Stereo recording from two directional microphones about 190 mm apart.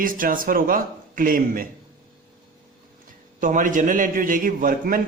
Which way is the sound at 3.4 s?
45° right (ahead or behind).